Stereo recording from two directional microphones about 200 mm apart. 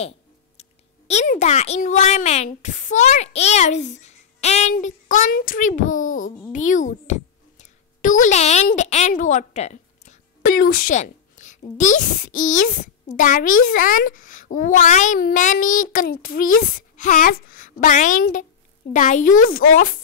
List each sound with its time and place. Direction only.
0.6 s a woman's voice: 35° left (ahead or behind)
10.4 s a woman's voice: 45° left (ahead or behind)